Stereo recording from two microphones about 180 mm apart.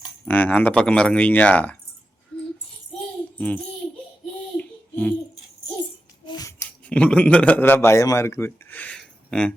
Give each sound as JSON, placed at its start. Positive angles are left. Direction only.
{"t": 0.3, "sound": "speech", "side_deg": 10}
{"t": 3.3, "sound": "a child's voice", "side_deg": 10}
{"t": 4.5, "sound": "child singing", "side_deg": 10}
{"t": 6.2, "sound": "music", "side_deg": 20}
{"t": 6.8, "sound": "a man's voice", "side_deg": 5}